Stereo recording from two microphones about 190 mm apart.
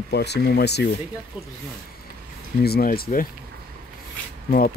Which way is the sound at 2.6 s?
55° left (ahead or behind).